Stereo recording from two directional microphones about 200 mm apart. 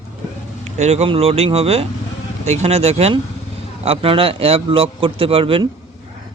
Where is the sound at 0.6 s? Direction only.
35° right (ahead or behind).